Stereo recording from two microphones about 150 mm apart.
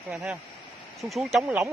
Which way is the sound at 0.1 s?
10° right (ahead or behind).